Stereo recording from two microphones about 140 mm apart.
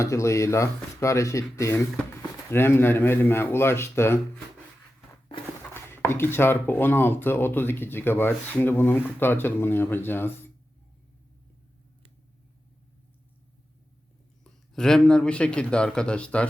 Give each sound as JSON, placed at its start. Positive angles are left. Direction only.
{"t": 0.0, "sound": "speech", "side_deg": 20}
{"t": 5.7, "sound": "speech", "side_deg": 15}
{"t": 14.4, "sound": "speech", "side_deg": 5}